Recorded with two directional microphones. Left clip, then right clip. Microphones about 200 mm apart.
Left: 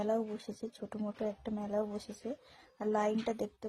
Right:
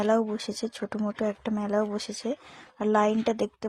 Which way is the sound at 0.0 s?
30° right (ahead or behind).